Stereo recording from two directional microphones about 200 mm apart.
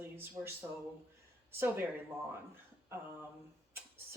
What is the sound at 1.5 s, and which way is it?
Speech, 10° right (ahead or behind).